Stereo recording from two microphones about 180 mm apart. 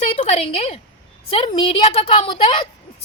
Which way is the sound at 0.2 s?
35° left (ahead or behind).